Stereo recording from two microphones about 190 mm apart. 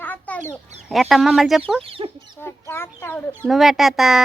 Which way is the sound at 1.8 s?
30° right (ahead or behind).